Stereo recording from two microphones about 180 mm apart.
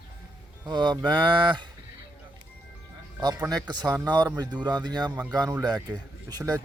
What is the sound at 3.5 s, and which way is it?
A man's voice, 20° right (ahead or behind).